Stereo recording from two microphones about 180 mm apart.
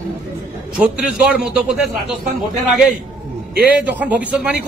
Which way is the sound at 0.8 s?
5° right (ahead or behind).